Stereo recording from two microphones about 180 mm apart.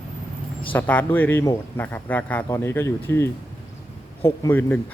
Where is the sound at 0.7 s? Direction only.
10° left (ahead or behind).